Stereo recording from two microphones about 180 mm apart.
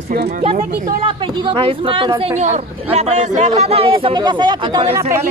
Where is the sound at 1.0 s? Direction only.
25° right (ahead or behind).